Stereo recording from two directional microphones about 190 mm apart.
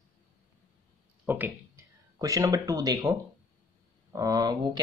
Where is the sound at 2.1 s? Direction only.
15° right (ahead or behind).